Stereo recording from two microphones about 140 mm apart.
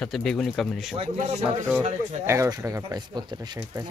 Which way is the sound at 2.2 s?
20° right (ahead or behind).